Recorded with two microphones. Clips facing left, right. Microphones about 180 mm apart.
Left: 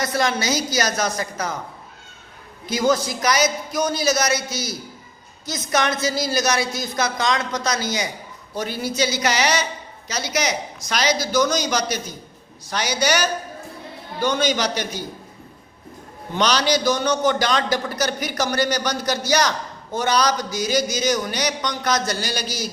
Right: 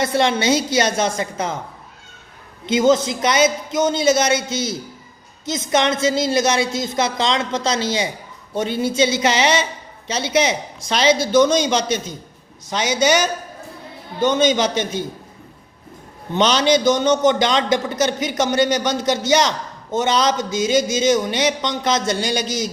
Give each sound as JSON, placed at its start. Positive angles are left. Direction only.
{"t": 0.0, "sound": "a man's voice", "side_deg": -25}
{"t": 2.6, "sound": "a man's voice", "side_deg": -25}
{"t": 16.3, "sound": "a man's voice", "side_deg": -25}